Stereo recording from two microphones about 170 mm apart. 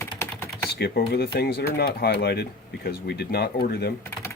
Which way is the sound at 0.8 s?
70° left (ahead or behind).